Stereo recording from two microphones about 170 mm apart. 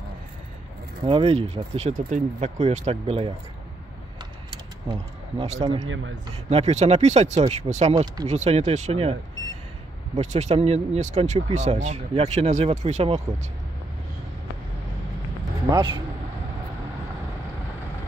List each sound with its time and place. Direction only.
1.0 s speech: 35° right (ahead or behind)
4.5 s a sound: 25° right (ahead or behind)
5.4 s speech: 40° right (ahead or behind)
7.9 s speech: 20° right (ahead or behind)
8.3 s speech: 40° right (ahead or behind)
10.1 s speech: 45° right (ahead or behind)
15.7 s speech: 25° right (ahead or behind)